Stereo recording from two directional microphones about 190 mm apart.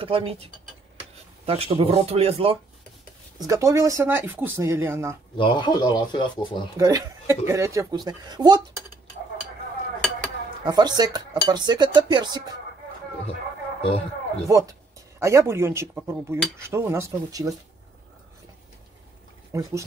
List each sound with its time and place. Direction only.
0.0 s speech: 30° right (ahead or behind)
3.3 s speech: 15° right (ahead or behind)
5.4 s speech: 25° left (ahead or behind)
6.8 s speech: 20° right (ahead or behind)
10.6 s speech: 20° right (ahead or behind)
13.3 s a sound: 30° left (ahead or behind)
14.5 s speech: 15° right (ahead or behind)
19.5 s speech: 15° right (ahead or behind)